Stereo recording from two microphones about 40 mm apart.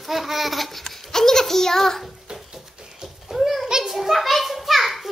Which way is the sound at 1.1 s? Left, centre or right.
Centre.